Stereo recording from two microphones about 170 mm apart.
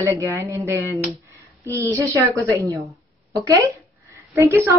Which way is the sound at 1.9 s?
15° right (ahead or behind).